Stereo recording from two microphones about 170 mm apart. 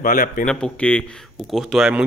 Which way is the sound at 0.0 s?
55° left (ahead or behind).